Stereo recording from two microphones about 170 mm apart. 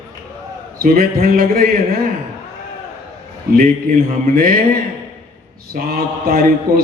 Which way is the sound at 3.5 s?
55° right (ahead or behind).